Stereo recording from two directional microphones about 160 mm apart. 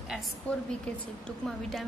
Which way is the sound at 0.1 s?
Centre (ahead or behind).